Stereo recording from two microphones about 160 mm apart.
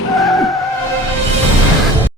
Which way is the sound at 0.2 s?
Centre (ahead or behind).